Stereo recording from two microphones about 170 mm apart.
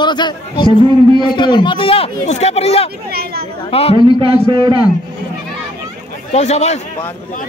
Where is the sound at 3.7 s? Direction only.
35° left (ahead or behind).